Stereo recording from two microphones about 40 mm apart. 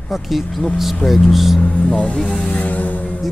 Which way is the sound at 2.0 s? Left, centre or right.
Left.